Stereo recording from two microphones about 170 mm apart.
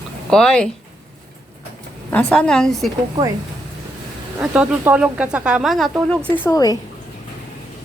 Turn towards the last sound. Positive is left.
turn(degrees=20)  # may be behind; listen again after turning